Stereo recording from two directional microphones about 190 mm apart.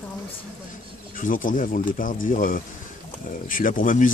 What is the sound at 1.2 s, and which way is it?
Speech, 45° left (ahead or behind).